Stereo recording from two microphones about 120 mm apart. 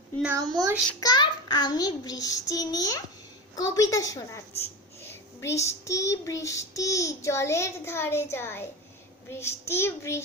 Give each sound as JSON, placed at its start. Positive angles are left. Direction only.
{"t": 0.3, "sound": "a child's voice", "side_deg": -30}
{"t": 1.0, "sound": "child singing", "side_deg": 40}